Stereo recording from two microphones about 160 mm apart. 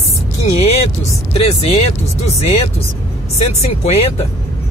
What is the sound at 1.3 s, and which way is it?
Speech, 40° left (ahead or behind).